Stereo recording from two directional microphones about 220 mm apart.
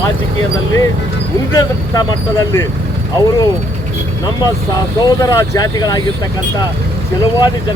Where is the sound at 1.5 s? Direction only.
15° left (ahead or behind).